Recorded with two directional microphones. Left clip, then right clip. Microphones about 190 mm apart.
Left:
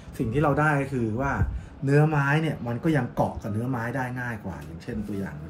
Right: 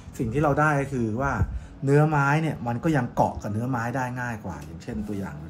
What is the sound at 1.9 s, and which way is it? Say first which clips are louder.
Speech: right 2 dB; 20° right (ahead or behind).